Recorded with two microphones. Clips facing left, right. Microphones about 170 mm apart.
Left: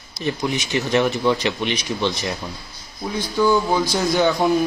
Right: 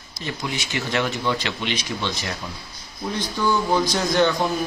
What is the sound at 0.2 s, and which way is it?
A man's voice, 20° left (ahead or behind).